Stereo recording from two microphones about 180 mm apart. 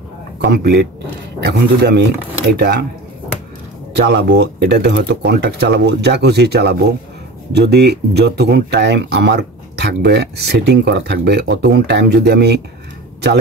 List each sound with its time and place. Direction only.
0.5 s speech: 60° right (ahead or behind)
4.0 s speech: 65° right (ahead or behind)